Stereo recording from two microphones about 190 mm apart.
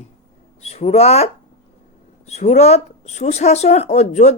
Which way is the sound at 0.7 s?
35° left (ahead or behind).